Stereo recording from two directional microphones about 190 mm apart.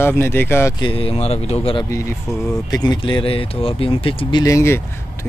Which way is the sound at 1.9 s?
15° left (ahead or behind).